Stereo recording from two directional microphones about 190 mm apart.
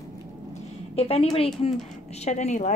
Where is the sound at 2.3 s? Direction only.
40° left (ahead or behind).